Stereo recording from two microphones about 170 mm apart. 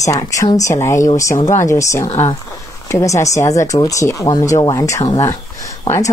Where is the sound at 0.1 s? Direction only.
20° left (ahead or behind).